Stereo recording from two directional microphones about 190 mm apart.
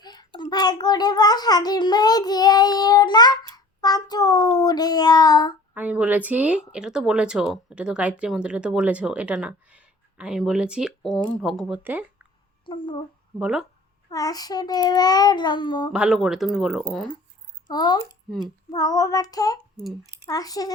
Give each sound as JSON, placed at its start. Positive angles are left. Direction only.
{"t": 0.0, "sound": "a sound", "side_deg": 20}
{"t": 0.3, "sound": "a child's voice", "side_deg": 25}
{"t": 5.7, "sound": "speech", "side_deg": -10}
{"t": 12.6, "sound": "a sound", "side_deg": 25}
{"t": 13.4, "sound": "speech", "side_deg": -5}
{"t": 14.1, "sound": "a child's voice", "side_deg": 20}
{"t": 15.9, "sound": "speech", "side_deg": -5}
{"t": 17.7, "sound": "a child's voice", "side_deg": 25}